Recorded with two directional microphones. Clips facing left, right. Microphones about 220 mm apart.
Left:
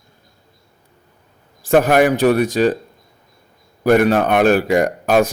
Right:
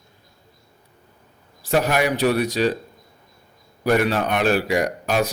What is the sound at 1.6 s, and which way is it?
A man's voice, 50° left (ahead or behind).